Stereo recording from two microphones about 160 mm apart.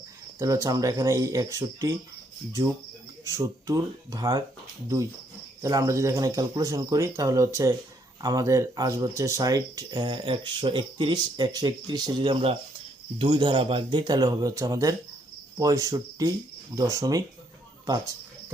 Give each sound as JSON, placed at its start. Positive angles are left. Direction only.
{"t": 0.3, "sound": "speech", "side_deg": -20}
{"t": 3.2, "sound": "speech", "side_deg": -20}
{"t": 5.6, "sound": "speech", "side_deg": -20}